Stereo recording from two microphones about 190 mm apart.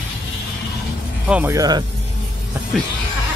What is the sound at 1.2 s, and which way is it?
Speech, 5° right (ahead or behind).